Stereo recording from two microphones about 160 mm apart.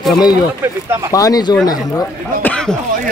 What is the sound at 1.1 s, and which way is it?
Speech, 20° left (ahead or behind).